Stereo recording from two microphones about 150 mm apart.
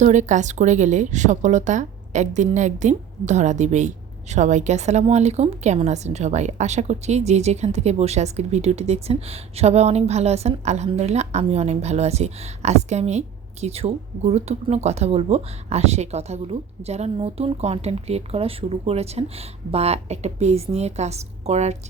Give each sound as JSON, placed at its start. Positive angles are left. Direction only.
{"t": 0.0, "sound": "speech", "side_deg": -55}